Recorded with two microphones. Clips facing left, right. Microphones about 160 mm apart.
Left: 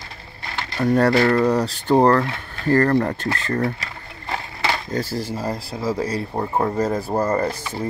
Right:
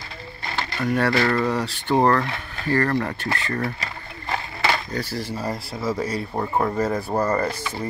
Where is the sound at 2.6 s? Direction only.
45° left (ahead or behind).